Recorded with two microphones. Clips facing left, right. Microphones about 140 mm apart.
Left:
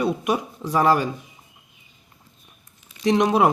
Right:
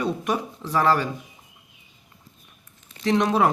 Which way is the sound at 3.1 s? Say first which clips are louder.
Left 2 dB; 15° left (ahead or behind).